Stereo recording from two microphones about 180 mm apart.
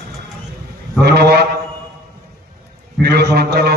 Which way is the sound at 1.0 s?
65° right (ahead or behind).